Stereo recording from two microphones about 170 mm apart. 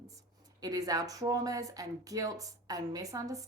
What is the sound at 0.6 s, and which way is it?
Speech, 20° right (ahead or behind).